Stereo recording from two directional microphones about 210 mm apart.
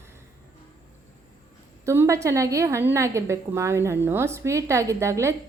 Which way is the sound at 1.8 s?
15° right (ahead or behind).